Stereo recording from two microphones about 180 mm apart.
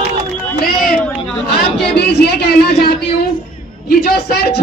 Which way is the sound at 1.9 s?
65° left (ahead or behind).